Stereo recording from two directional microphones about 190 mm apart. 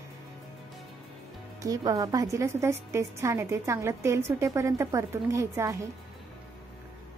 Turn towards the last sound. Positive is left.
turn(degrees=-15)  # may be behind; listen again after turning